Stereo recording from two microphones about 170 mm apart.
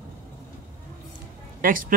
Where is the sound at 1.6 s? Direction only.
55° right (ahead or behind).